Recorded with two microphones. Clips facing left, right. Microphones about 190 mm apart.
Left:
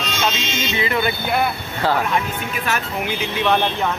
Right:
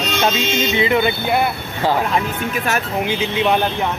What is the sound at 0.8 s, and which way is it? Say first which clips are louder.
Speech: right 3 dB; 20° right (ahead or behind).